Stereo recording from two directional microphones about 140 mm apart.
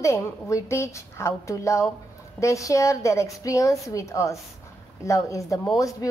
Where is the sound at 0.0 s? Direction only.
20° left (ahead or behind).